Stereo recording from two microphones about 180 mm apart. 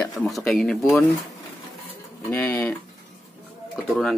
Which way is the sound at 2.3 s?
10° left (ahead or behind).